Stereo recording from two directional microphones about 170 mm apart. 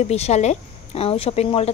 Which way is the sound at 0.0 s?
40° left (ahead or behind).